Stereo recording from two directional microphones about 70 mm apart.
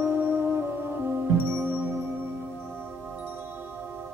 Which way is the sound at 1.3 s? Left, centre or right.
Right.